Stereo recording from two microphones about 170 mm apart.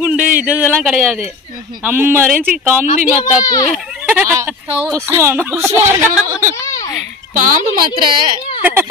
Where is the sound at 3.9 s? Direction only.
10° right (ahead or behind).